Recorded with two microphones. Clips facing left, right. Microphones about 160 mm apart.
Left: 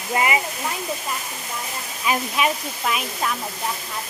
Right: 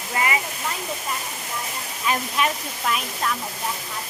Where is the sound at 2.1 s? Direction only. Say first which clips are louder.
Left 2 dB; 5° left (ahead or behind).